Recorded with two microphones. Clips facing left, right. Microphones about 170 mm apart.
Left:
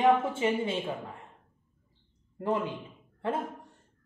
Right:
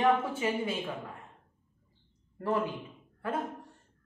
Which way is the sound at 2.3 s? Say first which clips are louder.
Left 1 dB; 20° left (ahead or behind).